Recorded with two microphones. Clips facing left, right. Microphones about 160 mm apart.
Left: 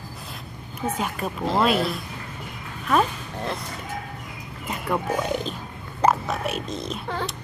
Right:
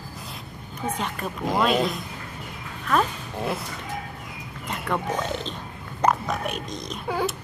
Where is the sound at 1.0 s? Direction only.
10° left (ahead or behind).